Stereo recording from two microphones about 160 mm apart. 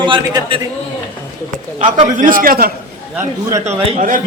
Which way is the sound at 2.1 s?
60° right (ahead or behind).